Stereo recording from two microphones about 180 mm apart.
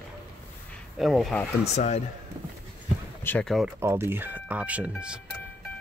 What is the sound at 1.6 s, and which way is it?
Speech, 35° left (ahead or behind).